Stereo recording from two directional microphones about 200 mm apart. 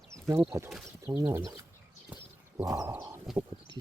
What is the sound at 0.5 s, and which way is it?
Speech, 15° right (ahead or behind).